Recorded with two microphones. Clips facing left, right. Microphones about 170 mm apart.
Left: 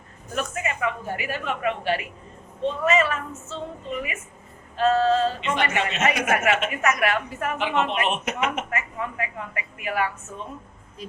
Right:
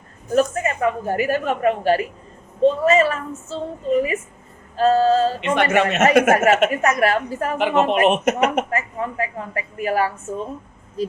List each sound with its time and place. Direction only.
0.3 s a woman's voice: 40° right (ahead or behind)
5.4 s a woman's voice: 55° right (ahead or behind); by 10.4 s 35° right (ahead or behind)